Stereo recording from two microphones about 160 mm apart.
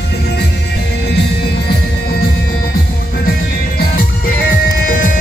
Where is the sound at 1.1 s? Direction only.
90° left.